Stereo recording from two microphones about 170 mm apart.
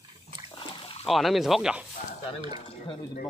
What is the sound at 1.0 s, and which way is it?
Speech, centre (ahead or behind).